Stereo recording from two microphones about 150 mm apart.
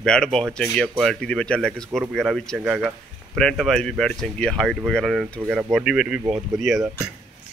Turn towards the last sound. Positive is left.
turn(degrees=0)  # may be behind; listen again after turning